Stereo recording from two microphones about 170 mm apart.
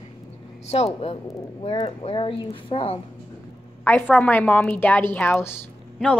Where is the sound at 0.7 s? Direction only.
35° left (ahead or behind).